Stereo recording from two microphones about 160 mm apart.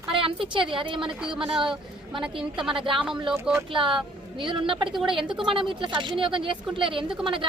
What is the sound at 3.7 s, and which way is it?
A woman's voice, 30° right (ahead or behind).